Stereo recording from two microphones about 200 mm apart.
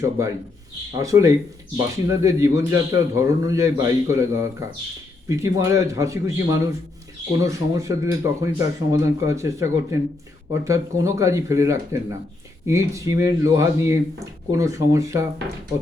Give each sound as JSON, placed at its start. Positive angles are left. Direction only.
{"t": 0.0, "sound": "speech", "side_deg": -15}